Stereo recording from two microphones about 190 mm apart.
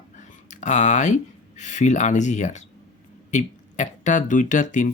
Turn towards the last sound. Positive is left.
turn(degrees=40)  # may be behind; listen again after turning